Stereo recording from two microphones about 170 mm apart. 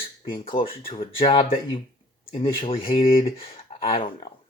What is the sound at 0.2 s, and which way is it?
Speech, 35° left (ahead or behind).